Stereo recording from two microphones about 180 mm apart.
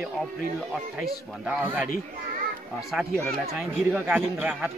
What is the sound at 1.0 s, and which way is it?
Speech, 5° right (ahead or behind).